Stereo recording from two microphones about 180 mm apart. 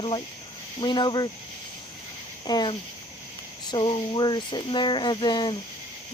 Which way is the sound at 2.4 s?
20° left (ahead or behind).